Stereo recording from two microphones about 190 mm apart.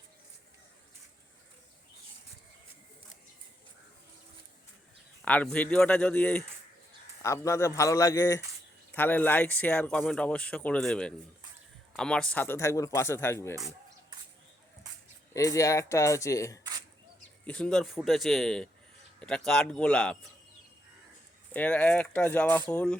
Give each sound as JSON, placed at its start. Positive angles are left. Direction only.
{"t": 5.2, "sound": "speech", "side_deg": 5}
{"t": 15.3, "sound": "speech", "side_deg": 15}
{"t": 17.4, "sound": "a man's voice", "side_deg": 5}
{"t": 21.5, "sound": "speech", "side_deg": 10}